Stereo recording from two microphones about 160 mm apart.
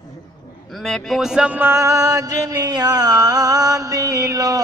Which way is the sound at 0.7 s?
Centre (ahead or behind).